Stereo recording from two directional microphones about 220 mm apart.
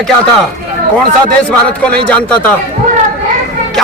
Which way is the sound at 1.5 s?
5° left (ahead or behind).